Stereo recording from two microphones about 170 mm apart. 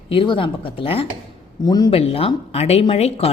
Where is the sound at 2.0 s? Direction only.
35° left (ahead or behind).